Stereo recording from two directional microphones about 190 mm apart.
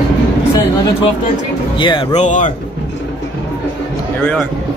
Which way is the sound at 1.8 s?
25° left (ahead or behind).